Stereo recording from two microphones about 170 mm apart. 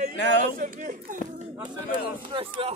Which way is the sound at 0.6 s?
50° right (ahead or behind).